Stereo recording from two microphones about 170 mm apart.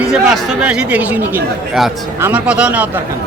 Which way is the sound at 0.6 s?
5° right (ahead or behind).